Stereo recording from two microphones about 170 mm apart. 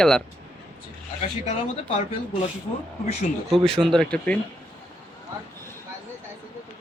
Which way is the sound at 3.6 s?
35° right (ahead or behind).